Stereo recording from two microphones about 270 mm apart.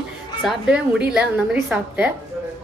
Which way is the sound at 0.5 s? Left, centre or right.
Centre.